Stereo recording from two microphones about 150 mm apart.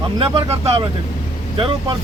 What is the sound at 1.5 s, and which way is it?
Speech, 35° right (ahead or behind).